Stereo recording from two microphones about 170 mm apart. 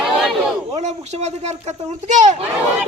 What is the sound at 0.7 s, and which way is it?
Speech, 40° right (ahead or behind).